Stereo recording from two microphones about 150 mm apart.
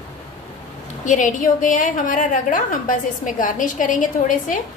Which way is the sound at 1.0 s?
55° left (ahead or behind).